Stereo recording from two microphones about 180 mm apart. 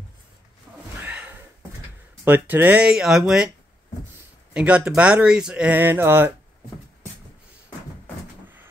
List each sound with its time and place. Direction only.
0.7 s a sound: 15° right (ahead or behind)
2.2 s speech: 10° right (ahead or behind)
4.6 s speech: 5° right (ahead or behind)